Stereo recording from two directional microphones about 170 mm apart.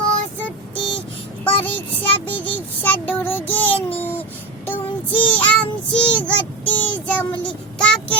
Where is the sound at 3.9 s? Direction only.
10° left (ahead or behind).